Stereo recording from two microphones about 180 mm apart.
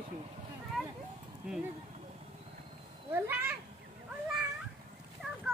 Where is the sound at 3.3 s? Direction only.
10° right (ahead or behind).